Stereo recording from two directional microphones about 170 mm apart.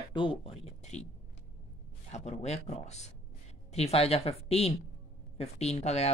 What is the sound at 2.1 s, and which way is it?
Speech, 40° left (ahead or behind).